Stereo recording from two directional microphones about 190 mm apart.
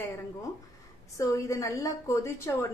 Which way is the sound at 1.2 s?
15° left (ahead or behind).